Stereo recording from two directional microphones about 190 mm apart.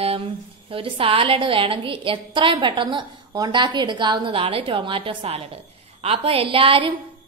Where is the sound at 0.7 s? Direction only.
30° right (ahead or behind).